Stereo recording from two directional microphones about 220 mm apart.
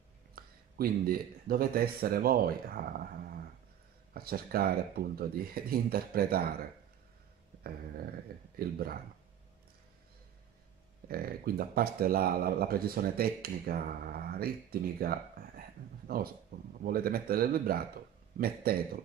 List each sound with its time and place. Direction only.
0.4 s speech: 40° right (ahead or behind)
4.1 s speech: 45° right (ahead or behind)
8.5 s speech: 45° right (ahead or behind)
11.1 s speech: 40° right (ahead or behind)